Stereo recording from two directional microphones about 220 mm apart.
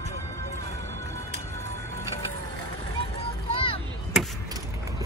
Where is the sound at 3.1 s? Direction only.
25° left (ahead or behind).